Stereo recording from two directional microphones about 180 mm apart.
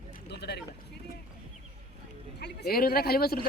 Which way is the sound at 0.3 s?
70° left (ahead or behind).